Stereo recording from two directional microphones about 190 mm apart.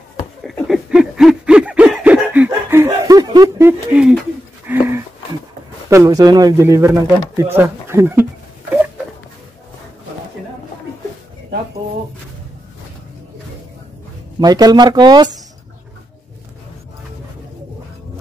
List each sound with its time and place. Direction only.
0.4 s a sound: centre (ahead or behind)
5.9 s speech: 15° right (ahead or behind)
14.4 s speech: 20° right (ahead or behind)